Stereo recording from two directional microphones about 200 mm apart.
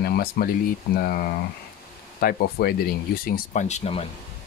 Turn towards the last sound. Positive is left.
turn(degrees=30)  # may be behind; listen again after turning